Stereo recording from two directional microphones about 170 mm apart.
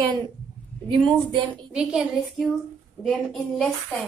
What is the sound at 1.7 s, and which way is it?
A woman's voice, 5° right (ahead or behind).